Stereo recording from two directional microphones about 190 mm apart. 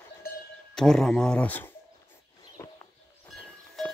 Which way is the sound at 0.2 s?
50° left (ahead or behind).